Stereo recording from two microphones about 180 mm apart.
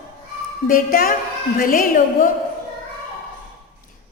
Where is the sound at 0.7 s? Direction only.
50° left (ahead or behind).